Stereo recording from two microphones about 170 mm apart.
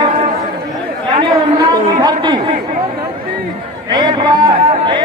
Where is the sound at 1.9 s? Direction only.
20° right (ahead or behind).